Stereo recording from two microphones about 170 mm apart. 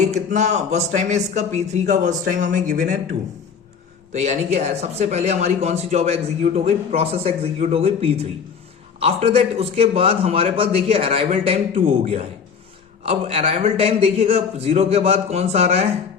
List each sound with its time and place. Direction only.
0.0 s speech: 45° right (ahead or behind)